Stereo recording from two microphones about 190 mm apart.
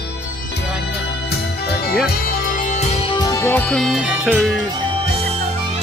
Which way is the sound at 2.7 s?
35° left (ahead or behind).